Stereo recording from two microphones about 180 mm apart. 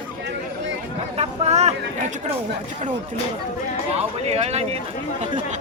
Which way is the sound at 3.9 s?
35° right (ahead or behind).